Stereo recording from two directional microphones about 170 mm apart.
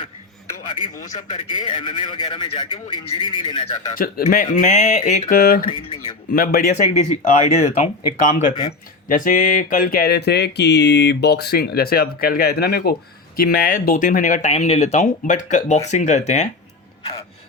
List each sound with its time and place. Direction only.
0.9 s speech: 45° left (ahead or behind)
1.5 s a man's voice: 30° left (ahead or behind)
3.9 s speech: 55° left (ahead or behind)
5.6 s a man's voice: 30° left (ahead or behind)
6.3 s a sound: 60° left (ahead or behind)
6.9 s speech: 45° left (ahead or behind)
8.4 s a man's voice: 25° left (ahead or behind)
9.0 s a sound: 50° left (ahead or behind)
15.9 s speech: 45° left (ahead or behind)